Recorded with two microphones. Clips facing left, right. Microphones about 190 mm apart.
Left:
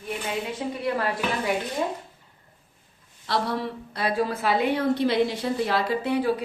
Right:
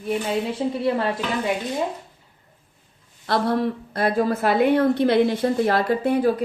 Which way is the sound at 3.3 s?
50° right (ahead or behind).